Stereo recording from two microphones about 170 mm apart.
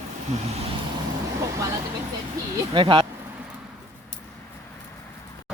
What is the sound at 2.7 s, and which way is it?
Speech, 30° right (ahead or behind).